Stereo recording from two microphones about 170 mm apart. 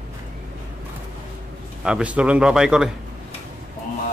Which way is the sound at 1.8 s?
5° right (ahead or behind).